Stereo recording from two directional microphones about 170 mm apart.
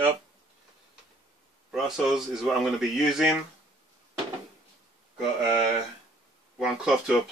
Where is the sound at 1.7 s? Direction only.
Centre (ahead or behind).